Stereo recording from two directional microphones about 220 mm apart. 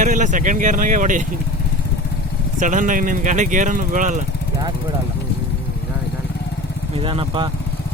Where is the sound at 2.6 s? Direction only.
35° right (ahead or behind).